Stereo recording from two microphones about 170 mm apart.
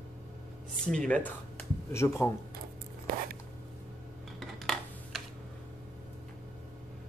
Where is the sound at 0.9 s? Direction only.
5° left (ahead or behind).